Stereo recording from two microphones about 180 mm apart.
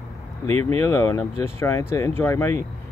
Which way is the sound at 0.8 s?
15° left (ahead or behind).